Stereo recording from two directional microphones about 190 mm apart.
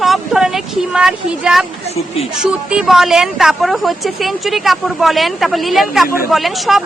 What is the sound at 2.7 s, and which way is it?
A woman's voice, 5° right (ahead or behind).